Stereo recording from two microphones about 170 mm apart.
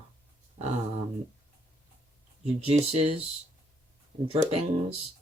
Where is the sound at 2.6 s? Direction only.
40° right (ahead or behind).